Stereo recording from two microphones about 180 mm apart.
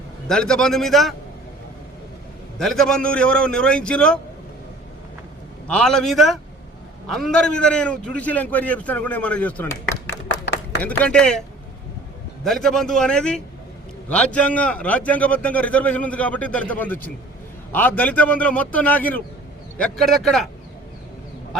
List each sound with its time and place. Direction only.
0.3 s a man's voice: 5° left (ahead or behind)
2.6 s a man's voice: 5° left (ahead or behind)
5.6 s a man's voice: 5° left (ahead or behind)
10.1 s clapping: 65° left (ahead or behind)
10.8 s a man's voice: 5° left (ahead or behind)